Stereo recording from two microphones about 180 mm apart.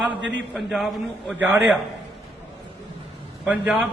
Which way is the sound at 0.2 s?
90° right.